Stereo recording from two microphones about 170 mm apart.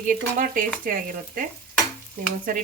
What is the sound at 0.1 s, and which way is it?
Frying, 50° right (ahead or behind).